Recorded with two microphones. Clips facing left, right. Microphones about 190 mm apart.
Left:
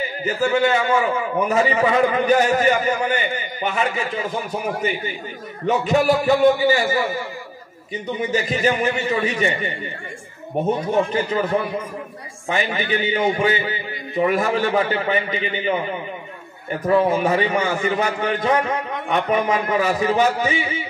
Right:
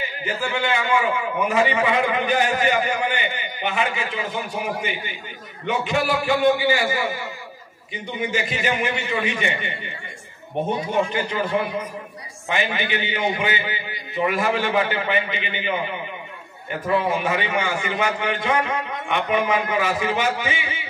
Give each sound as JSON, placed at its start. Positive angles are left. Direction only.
{"t": 0.2, "sound": "a man's voice", "side_deg": 40}
{"t": 8.3, "sound": "a man's voice", "side_deg": 40}
{"t": 12.4, "sound": "a man's voice", "side_deg": 40}
{"t": 16.8, "sound": "a man's voice", "side_deg": 40}